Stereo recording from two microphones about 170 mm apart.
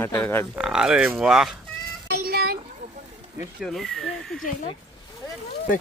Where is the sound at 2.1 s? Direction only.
70° right (ahead or behind).